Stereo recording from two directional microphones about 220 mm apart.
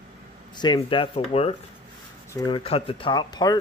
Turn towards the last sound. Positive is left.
turn(degrees=20)  # may be behind; listen again after turning